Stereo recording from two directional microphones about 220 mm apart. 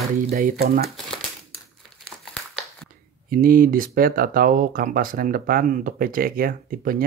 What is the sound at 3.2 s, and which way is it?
Speech, 40° right (ahead or behind).